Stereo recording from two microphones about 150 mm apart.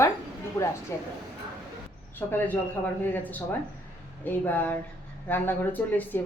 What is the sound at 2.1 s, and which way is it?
Speech, 10° left (ahead or behind).